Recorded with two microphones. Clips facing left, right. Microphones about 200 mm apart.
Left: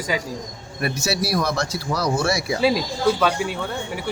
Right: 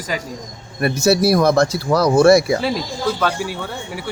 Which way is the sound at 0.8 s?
50° right (ahead or behind).